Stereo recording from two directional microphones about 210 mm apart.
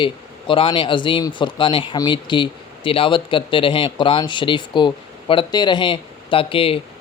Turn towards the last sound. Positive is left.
turn(degrees=25)  # may be behind; listen again after turning